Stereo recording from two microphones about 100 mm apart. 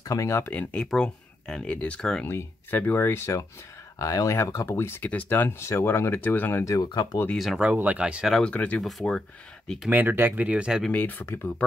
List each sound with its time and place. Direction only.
0.0 s speech: 35° left (ahead or behind)
0.5 s speech: 10° left (ahead or behind)
2.2 s speech: 20° left (ahead or behind)
6.6 s speech: 35° left (ahead or behind)
6.9 s speech: 50° left (ahead or behind)
7.5 s speech: 15° right (ahead or behind)
8.4 s speech: 10° left (ahead or behind)
9.8 s speech: 20° right (ahead or behind)
10.9 s speech: 15° left (ahead or behind)